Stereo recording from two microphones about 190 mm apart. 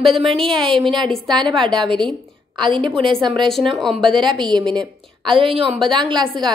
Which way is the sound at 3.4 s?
Centre (ahead or behind).